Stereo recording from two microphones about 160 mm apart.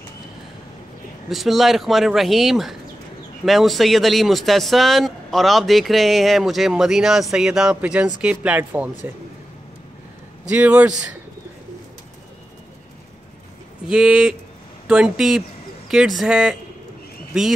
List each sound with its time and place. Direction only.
1.3 s speech: centre (ahead or behind)
10.5 s a man's voice: 10° right (ahead or behind)
13.8 s speech: 5° right (ahead or behind)